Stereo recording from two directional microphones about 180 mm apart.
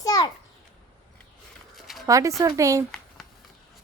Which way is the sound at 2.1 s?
15° right (ahead or behind).